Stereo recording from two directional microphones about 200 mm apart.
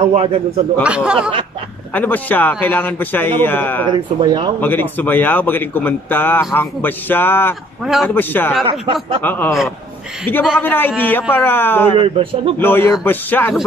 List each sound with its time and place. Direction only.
0.0 s speech: 30° right (ahead or behind)
0.8 s speech: 5° right (ahead or behind)
2.0 s a man's voice: 10° left (ahead or behind)
3.9 s speech: 20° right (ahead or behind)
4.6 s a man's voice: 10° left (ahead or behind)
8.6 s speech: 25° right (ahead or behind)
9.2 s a man's voice: 10° left (ahead or behind)
12.0 s speech: 25° right (ahead or behind)
12.5 s a man's voice: 10° left (ahead or behind)